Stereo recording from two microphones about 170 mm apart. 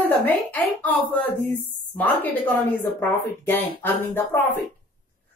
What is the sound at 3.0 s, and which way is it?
A woman's voice, 10° left (ahead or behind).